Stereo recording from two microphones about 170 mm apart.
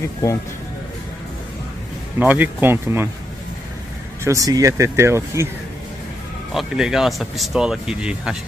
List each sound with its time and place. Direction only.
2.1 s speech: 10° right (ahead or behind)
4.2 s speech: 20° right (ahead or behind)
6.5 s speech: centre (ahead or behind)